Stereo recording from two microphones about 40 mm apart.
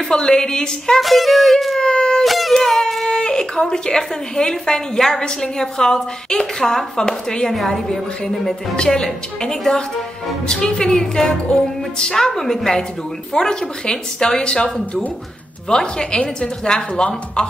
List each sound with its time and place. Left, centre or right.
0.1 s a woman's voice: centre
1.0 s music: centre
1.8 s a sound: left
2.2 s a sound: centre
2.5 s a woman's voice: centre
3.1 s a woman's voice: centre
15.7 s a woman's voice: centre